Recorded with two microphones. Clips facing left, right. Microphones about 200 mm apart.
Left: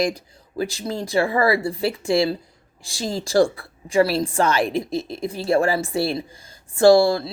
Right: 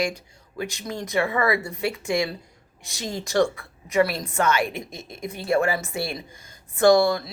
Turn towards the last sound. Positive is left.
turn(degrees=30)  # may be behind; listen again after turning